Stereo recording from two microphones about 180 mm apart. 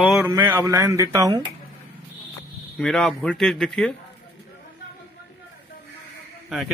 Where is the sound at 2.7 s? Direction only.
5° left (ahead or behind).